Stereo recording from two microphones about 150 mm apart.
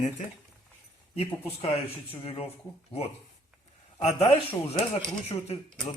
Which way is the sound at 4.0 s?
45° left (ahead or behind).